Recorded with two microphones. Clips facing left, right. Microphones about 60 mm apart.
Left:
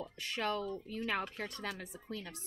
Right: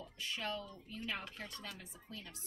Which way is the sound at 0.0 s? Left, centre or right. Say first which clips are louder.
Left 5 dB; left.